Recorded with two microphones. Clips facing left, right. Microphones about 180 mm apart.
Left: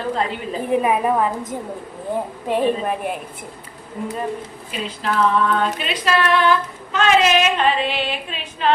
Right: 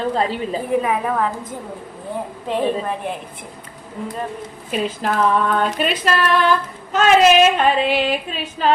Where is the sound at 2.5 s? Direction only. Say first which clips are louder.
Left 1 dB; 10° left (ahead or behind).